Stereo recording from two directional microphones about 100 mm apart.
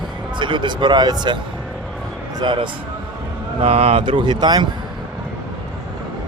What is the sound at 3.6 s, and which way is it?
Speech, 85° right.